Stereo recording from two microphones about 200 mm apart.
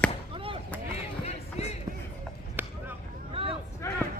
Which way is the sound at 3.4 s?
30° right (ahead or behind).